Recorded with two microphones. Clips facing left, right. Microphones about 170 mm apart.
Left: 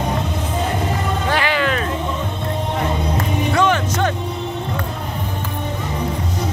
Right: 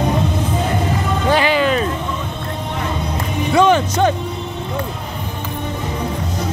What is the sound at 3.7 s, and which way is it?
Music, 15° right (ahead or behind).